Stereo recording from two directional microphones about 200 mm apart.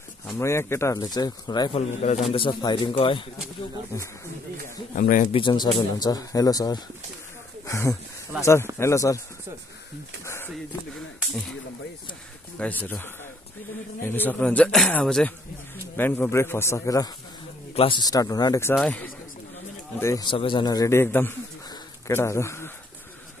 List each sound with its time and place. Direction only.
0.4 s a man's voice: 15° left (ahead or behind)
1.8 s a man's voice: 35° left (ahead or behind)
4.9 s a man's voice: 40° left (ahead or behind)
5.3 s a man's voice: 25° left (ahead or behind)
10.2 s a sound: 10° left (ahead or behind)
12.5 s a man's voice: 10° left (ahead or behind)